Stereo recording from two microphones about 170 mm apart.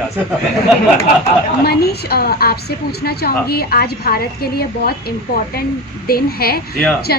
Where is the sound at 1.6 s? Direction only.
65° left (ahead or behind).